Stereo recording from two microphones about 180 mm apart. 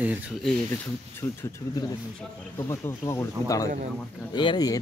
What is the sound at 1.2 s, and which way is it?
Speech, 15° left (ahead or behind).